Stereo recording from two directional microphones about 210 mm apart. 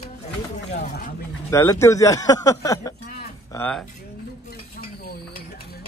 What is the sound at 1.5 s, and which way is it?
Speech, 15° left (ahead or behind).